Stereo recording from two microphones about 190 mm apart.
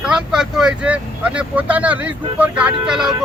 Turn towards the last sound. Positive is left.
turn(degrees=-5)  # may be behind; listen again after turning